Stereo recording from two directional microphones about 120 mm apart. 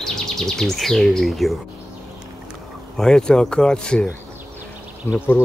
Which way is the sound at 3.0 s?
5° left (ahead or behind).